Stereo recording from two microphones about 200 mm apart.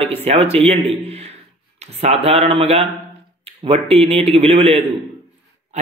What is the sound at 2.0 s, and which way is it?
Speech, 30° right (ahead or behind).